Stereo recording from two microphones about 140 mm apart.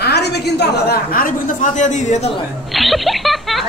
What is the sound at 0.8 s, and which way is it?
Speech, 80° left.